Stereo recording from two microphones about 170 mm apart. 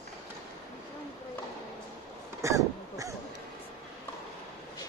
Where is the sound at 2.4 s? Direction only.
20° right (ahead or behind).